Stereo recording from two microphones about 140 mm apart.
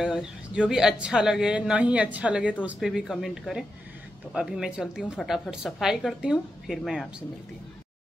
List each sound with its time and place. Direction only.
0.0 s a woman's voice: 5° right (ahead or behind)